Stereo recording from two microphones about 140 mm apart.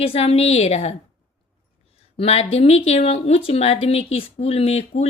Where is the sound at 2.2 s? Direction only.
45° left (ahead or behind).